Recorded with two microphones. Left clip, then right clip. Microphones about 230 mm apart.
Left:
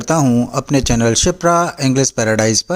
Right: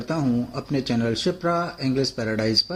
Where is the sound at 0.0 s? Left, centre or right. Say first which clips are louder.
Left 10 dB; left.